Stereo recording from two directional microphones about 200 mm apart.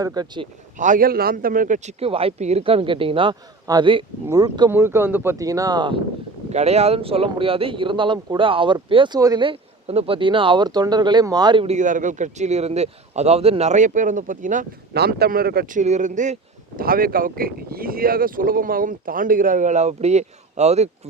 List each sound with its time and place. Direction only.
0.0 s speech: 20° right (ahead or behind)
0.8 s speech: 40° right (ahead or behind); by 6.0 s 20° right (ahead or behind)
6.5 s speech: 35° right (ahead or behind)